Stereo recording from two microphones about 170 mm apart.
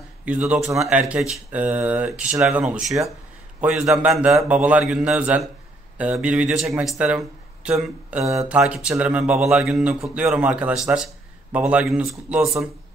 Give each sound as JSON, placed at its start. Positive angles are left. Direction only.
{"t": 0.3, "sound": "a man's voice", "side_deg": -5}
{"t": 8.3, "sound": "speech", "side_deg": -15}
{"t": 8.5, "sound": "a man's voice", "side_deg": -5}